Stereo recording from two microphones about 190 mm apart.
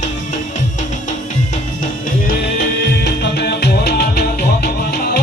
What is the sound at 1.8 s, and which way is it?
Music, 55° left (ahead or behind).